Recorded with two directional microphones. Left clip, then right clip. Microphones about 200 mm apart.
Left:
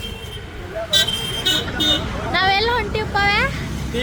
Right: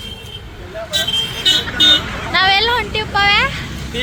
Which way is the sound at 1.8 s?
10° left (ahead or behind).